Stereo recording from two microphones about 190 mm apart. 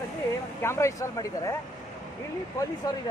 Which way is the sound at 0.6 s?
15° left (ahead or behind).